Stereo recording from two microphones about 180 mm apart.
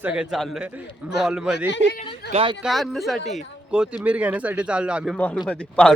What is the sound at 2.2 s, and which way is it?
Speech, 70° left (ahead or behind).